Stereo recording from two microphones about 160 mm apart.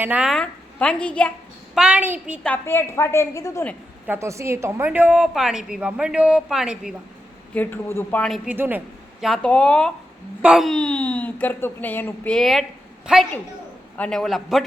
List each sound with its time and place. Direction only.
0.0 s speech: 5° right (ahead or behind)
1.7 s a child's voice: 5° right (ahead or behind)
2.4 s speech: 10° left (ahead or behind)
4.0 s a woman's voice: 15° right (ahead or behind)
7.5 s speech: 10° left (ahead or behind)
8.4 s a child's voice: 10° right (ahead or behind)
9.2 s a woman's voice: 5° left (ahead or behind)
13.9 s a woman's voice: 5° left (ahead or behind)